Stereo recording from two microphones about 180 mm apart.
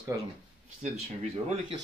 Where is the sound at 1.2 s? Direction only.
35° right (ahead or behind).